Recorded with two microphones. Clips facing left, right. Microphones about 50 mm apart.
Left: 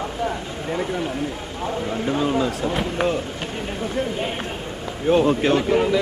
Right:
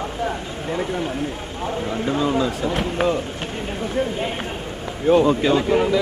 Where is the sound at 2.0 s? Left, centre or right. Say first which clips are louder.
Right 1 dB; centre.